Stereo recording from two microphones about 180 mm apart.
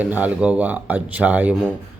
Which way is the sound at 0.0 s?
10° right (ahead or behind).